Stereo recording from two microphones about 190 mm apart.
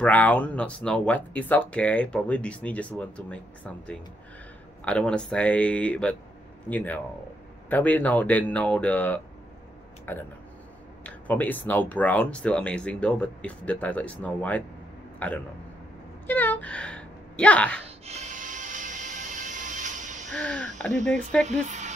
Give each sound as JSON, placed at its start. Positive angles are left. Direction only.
{"t": 0.0, "sound": "speech", "side_deg": 10}
{"t": 16.3, "sound": "a sound", "side_deg": 10}
{"t": 17.8, "sound": "music", "side_deg": -35}
{"t": 20.3, "sound": "speech", "side_deg": 5}
{"t": 21.5, "sound": "speech", "side_deg": -40}